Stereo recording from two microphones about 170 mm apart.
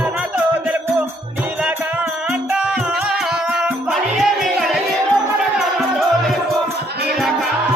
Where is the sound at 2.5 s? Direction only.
5° right (ahead or behind).